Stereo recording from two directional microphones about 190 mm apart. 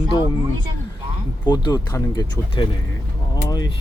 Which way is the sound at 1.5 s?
20° left (ahead or behind).